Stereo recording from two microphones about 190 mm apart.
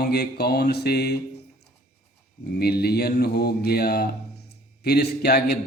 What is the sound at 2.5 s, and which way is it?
Mantra, 55° left (ahead or behind).